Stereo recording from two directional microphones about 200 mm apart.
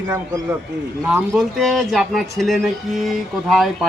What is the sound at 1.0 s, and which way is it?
Speech, 5° right (ahead or behind).